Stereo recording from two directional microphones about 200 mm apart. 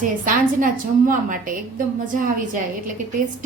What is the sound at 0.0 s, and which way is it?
A woman's voice, 40° right (ahead or behind).